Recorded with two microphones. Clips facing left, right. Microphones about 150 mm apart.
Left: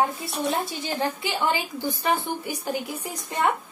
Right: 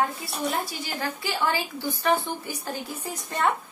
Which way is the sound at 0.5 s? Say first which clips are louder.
Left 3 dB; 25° left (ahead or behind).